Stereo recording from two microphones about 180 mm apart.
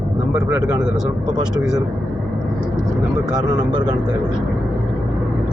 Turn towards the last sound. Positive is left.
turn(degrees=-25)  # may be behind; listen again after turning